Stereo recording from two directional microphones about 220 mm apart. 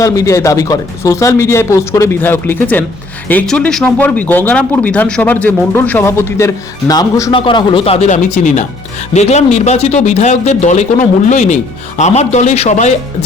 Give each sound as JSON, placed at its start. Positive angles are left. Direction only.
{"t": 0.0, "sound": "speech", "side_deg": 15}